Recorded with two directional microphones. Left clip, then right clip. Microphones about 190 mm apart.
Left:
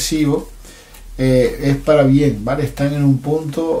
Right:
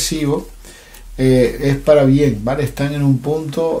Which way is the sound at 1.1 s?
35° right (ahead or behind).